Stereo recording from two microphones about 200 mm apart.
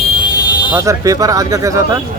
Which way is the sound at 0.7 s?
15° right (ahead or behind).